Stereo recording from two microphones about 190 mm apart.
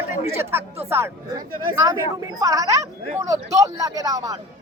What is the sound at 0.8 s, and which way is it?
Speech, 10° right (ahead or behind).